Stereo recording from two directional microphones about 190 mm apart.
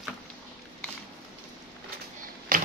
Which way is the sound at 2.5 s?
50° right (ahead or behind).